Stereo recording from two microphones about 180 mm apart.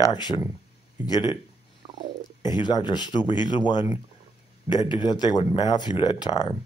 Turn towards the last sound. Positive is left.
turn(degrees=25)  # may be behind; listen again after turning